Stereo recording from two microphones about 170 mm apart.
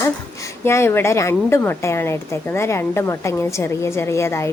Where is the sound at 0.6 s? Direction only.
15° left (ahead or behind).